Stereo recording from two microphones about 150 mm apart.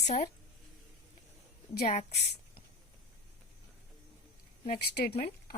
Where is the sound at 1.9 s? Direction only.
55° left (ahead or behind).